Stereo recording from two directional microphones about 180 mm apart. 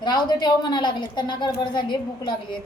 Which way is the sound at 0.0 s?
25° left (ahead or behind).